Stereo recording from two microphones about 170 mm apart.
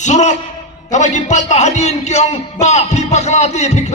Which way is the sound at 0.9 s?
45° left (ahead or behind).